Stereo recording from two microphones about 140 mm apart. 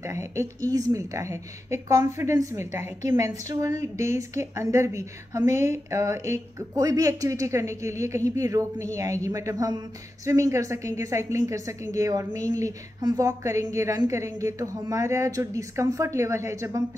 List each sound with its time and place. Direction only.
0.0 s a woman's voice: 20° right (ahead or behind)